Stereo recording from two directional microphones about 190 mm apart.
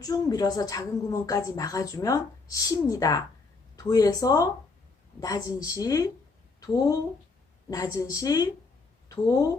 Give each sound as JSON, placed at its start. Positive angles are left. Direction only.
{"t": 0.0, "sound": "a woman's voice", "side_deg": 20}
{"t": 7.7, "sound": "a woman's voice", "side_deg": 15}